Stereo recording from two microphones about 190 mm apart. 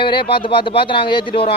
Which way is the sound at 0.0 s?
25° left (ahead or behind).